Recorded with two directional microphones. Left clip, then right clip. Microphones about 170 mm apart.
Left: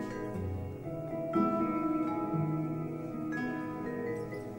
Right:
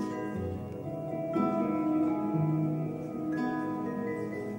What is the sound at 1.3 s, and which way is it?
Music, 20° left (ahead or behind).